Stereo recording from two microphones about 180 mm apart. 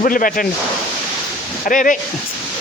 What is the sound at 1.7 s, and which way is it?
Speech, 45° left (ahead or behind).